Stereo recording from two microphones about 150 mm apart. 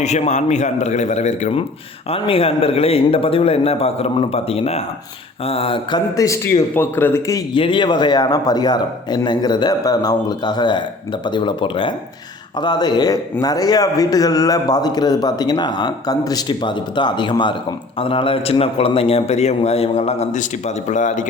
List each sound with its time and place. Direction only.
0.0 s a man's voice: 50° left (ahead or behind)
2.0 s a man's voice: 40° left (ahead or behind)
6.1 s a man's voice: 20° left (ahead or behind)
7.5 s a man's voice: 35° left (ahead or behind); by 21.2 s 55° left (ahead or behind)